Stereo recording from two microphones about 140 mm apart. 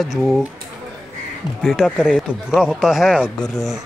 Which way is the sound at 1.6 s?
5° right (ahead or behind).